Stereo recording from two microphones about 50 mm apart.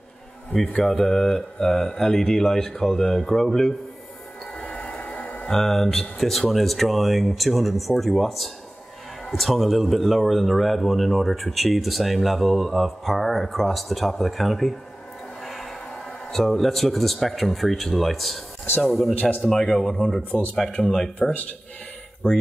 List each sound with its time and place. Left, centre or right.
0.5 s speech: centre
4.8 s a sound: left
5.5 s speech: centre
19.1 s a man's voice: left
19.5 s speech: centre
20.2 s a man's voice: left
20.7 s speech: centre
21.2 s a man's voice: left